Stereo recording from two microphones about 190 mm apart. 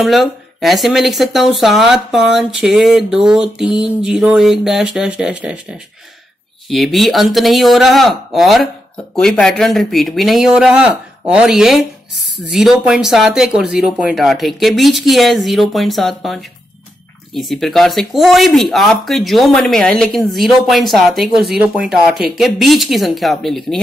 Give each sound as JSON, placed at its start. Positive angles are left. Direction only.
{"t": 0.0, "sound": "speech", "side_deg": 0}